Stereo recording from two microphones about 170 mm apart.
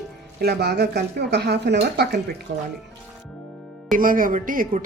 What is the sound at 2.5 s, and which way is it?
Speech, 90° right.